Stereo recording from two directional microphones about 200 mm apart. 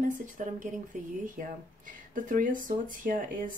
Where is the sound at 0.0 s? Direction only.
40° right (ahead or behind).